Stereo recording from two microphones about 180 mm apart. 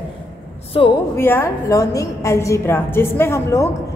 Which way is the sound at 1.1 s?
15° left (ahead or behind).